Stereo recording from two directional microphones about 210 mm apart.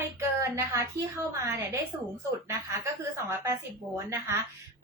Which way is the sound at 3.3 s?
10° right (ahead or behind).